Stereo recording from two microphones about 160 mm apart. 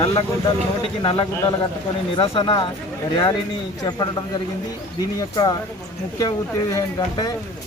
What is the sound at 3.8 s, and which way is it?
Speech, 25° left (ahead or behind).